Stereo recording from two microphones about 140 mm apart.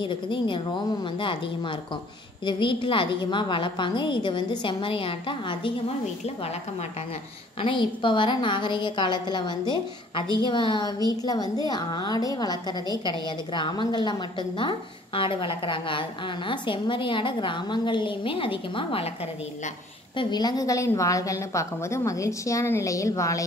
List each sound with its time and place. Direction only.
0.0 s a woman's voice: 35° left (ahead or behind)
6.2 s speech: 50° left (ahead or behind)
7.6 s a woman's voice: 35° left (ahead or behind)
20.2 s a woman's voice: 30° left (ahead or behind)